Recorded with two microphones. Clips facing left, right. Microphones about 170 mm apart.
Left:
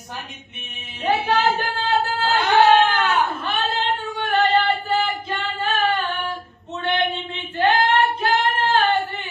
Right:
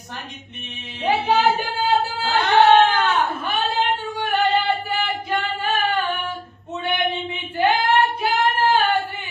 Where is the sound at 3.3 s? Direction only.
10° right (ahead or behind).